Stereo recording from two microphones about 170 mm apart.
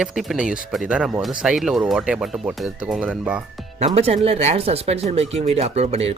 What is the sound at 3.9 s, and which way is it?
Speech, 35° right (ahead or behind).